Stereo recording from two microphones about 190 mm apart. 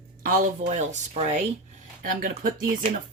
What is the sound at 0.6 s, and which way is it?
Speech, 40° right (ahead or behind).